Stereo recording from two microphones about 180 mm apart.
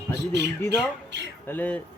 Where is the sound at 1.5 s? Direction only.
10° left (ahead or behind).